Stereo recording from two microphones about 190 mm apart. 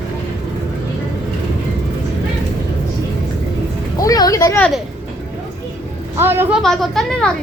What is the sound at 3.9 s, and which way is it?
Vehicle, 20° left (ahead or behind).